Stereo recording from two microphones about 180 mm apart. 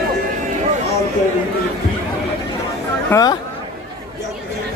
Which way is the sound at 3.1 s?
15° left (ahead or behind).